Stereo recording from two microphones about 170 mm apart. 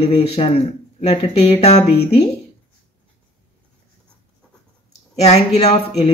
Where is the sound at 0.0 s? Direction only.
35° left (ahead or behind).